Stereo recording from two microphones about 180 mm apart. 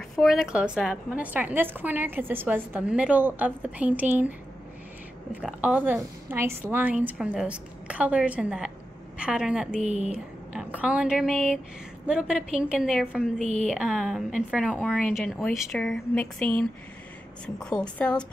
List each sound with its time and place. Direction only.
0.1 s a woman's voice: centre (ahead or behind)
5.3 s a woman's voice: 5° right (ahead or behind)
9.8 s a woman's voice: 40° right (ahead or behind)
10.1 s a woman's voice: 5° right (ahead or behind)
13.4 s a woman's voice: 40° right (ahead or behind)
13.7 s a woman's voice: centre (ahead or behind)